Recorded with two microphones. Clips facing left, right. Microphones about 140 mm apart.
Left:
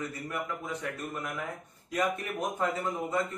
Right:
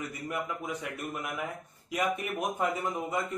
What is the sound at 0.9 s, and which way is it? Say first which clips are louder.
A man's voice: even; 15° right (ahead or behind).